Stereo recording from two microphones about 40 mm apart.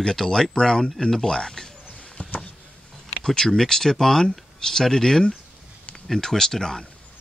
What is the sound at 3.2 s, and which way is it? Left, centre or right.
Speech, centre.